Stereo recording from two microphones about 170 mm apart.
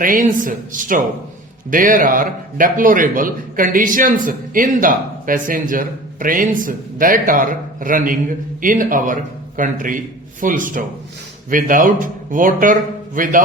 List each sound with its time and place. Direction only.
0.0 s a man's voice: 55° right (ahead or behind)